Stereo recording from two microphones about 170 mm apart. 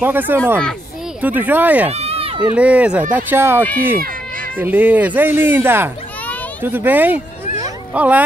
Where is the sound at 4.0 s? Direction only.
55° right (ahead or behind).